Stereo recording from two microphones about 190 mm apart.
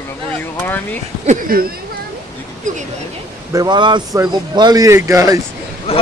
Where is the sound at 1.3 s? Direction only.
50° right (ahead or behind).